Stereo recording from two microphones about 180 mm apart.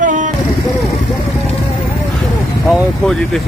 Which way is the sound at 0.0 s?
45° right (ahead or behind).